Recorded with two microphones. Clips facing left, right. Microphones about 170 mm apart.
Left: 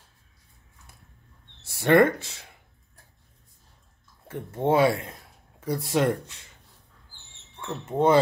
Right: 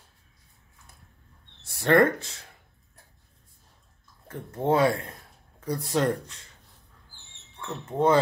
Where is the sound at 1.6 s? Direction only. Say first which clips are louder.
Left 2 dB; 20° left (ahead or behind).